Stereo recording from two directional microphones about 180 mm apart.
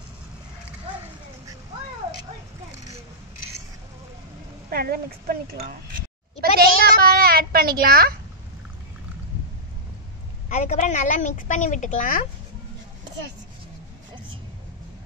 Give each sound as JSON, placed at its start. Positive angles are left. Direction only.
{"t": 4.6, "sound": "speech", "side_deg": -60}
{"t": 6.6, "sound": "a sound", "side_deg": -55}
{"t": 10.5, "sound": "a woman's voice", "side_deg": 40}